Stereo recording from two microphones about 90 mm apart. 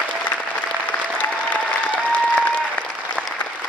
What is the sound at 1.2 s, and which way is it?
Applause, 15° left (ahead or behind).